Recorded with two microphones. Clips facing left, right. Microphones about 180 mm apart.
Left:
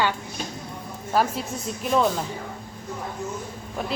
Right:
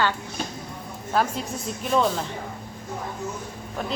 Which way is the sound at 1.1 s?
5° left (ahead or behind).